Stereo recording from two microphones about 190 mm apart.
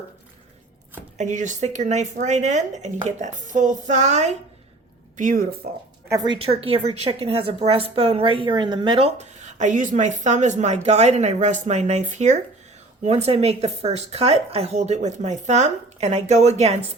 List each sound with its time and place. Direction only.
1.2 s speech: 40° right (ahead or behind)
6.1 s a woman's voice: 20° right (ahead or behind)